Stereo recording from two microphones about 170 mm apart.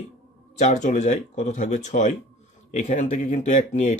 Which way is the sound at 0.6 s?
45° left (ahead or behind).